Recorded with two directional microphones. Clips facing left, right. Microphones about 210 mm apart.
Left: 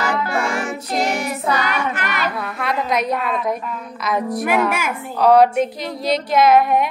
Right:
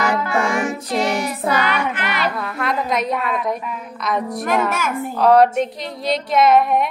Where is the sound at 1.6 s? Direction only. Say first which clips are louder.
Right 1 dB; 45° left (ahead or behind).